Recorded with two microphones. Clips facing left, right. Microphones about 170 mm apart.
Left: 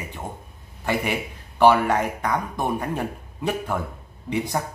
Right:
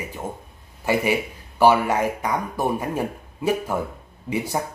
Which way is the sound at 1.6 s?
10° right (ahead or behind).